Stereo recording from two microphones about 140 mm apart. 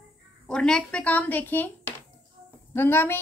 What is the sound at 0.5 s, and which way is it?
Speech, 5° left (ahead or behind).